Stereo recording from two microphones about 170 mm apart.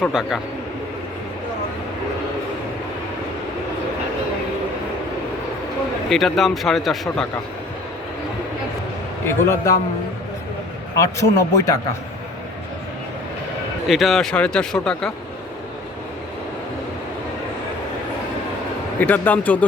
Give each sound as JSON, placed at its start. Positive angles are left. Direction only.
{"t": 0.0, "sound": "speech", "side_deg": 0}
{"t": 6.1, "sound": "speech", "side_deg": 0}
{"t": 9.2, "sound": "speech", "side_deg": 15}
{"t": 10.9, "sound": "speech", "side_deg": 20}
{"t": 13.8, "sound": "speech", "side_deg": 0}
{"t": 18.9, "sound": "speech", "side_deg": 10}